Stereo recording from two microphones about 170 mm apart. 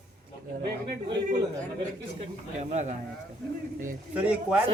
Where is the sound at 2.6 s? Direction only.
45° right (ahead or behind).